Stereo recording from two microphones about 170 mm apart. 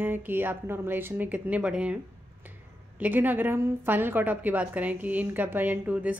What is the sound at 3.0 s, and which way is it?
A woman's voice, 10° right (ahead or behind).